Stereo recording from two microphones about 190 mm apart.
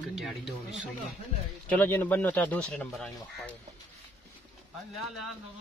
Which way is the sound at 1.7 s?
10° left (ahead or behind).